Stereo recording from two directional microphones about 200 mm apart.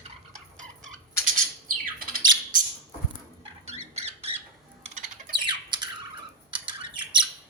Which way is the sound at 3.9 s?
30° right (ahead or behind).